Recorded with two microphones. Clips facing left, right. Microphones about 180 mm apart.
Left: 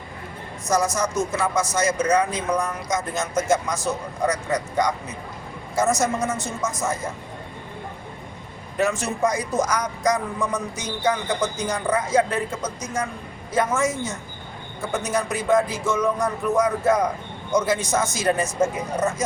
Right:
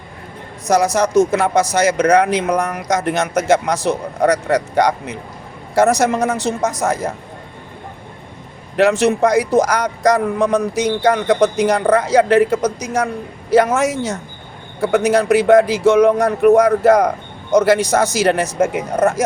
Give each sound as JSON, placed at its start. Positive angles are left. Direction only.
{"t": 0.9, "sound": "a man's voice", "side_deg": -65}
{"t": 8.7, "sound": "a man's voice", "side_deg": -70}